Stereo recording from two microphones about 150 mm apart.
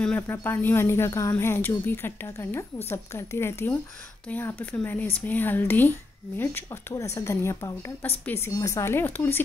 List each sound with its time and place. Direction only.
0.0 s speech: 15° left (ahead or behind)